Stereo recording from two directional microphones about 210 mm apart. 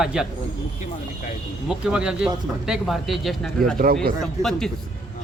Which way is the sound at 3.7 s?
45° right (ahead or behind).